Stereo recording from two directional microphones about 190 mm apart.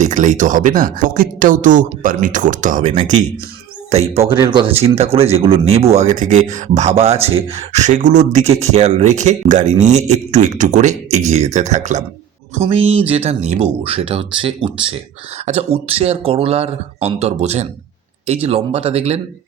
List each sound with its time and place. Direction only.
0.0 s speech: 40° right (ahead or behind)